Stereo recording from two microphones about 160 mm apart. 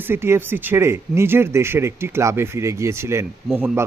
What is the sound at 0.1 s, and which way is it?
Speech, 15° right (ahead or behind).